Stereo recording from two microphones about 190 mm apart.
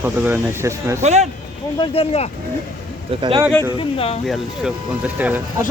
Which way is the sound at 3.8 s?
30° left (ahead or behind).